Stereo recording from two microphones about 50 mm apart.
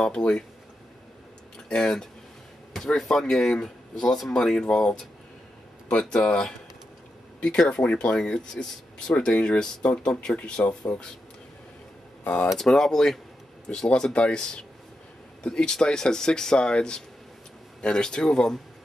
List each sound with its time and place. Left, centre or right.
0.0 s speech: centre
1.7 s speech: centre
12.5 s speech: centre